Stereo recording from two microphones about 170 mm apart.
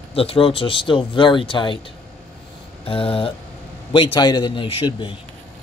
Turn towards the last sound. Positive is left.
turn(degrees=30)  # may be behind; listen again after turning